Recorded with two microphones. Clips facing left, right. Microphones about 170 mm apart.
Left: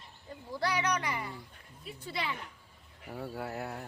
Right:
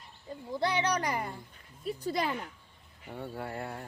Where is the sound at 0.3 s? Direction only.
20° right (ahead or behind); by 2.4 s 45° right (ahead or behind).